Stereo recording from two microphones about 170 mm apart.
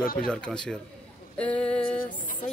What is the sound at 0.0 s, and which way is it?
Speech, 55° left (ahead or behind).